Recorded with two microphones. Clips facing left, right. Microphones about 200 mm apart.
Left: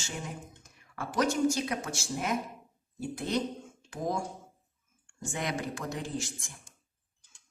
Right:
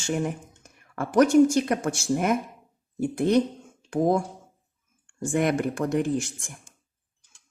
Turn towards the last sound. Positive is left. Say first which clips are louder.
# right 10 dB
turn(degrees=-55)  # may be behind; listen again after turning